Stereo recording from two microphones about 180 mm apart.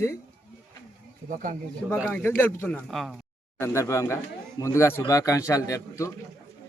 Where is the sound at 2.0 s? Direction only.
10° left (ahead or behind).